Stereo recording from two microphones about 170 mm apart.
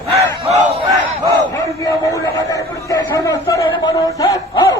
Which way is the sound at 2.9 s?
20° left (ahead or behind).